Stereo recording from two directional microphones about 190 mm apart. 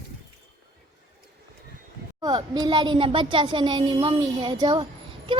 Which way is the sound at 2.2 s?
20° right (ahead or behind).